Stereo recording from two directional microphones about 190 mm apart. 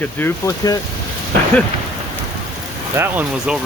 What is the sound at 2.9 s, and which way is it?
Speech, 10° right (ahead or behind).